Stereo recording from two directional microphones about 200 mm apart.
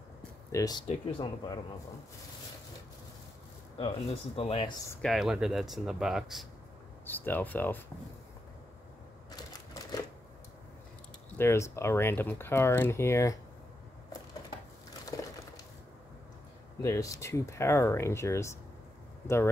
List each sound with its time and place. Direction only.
0.5 s speech: 15° left (ahead or behind)
4.4 s speech: 25° left (ahead or behind)
5.0 s speech: centre (ahead or behind)
7.1 s speech: 10° left (ahead or behind)
9.5 s typewriter: 20° left (ahead or behind)
11.3 s speech: 15° left (ahead or behind)
15.1 s a sound: 15° left (ahead or behind)
16.8 s speech: 15° left (ahead or behind)